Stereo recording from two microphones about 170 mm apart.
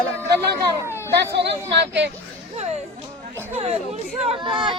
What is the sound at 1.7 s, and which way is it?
Speech, 90° right.